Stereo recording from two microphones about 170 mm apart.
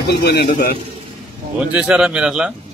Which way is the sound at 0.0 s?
80° left.